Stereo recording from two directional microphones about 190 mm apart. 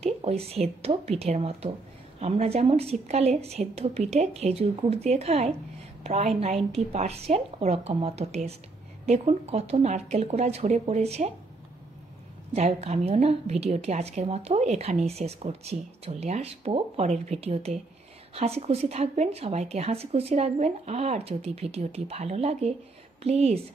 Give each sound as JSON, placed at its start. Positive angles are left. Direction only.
{"t": 0.0, "sound": "a woman's voice", "side_deg": -35}
{"t": 12.5, "sound": "a woman's voice", "side_deg": -35}